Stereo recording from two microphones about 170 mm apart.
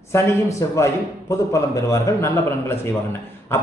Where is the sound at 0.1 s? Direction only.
15° left (ahead or behind).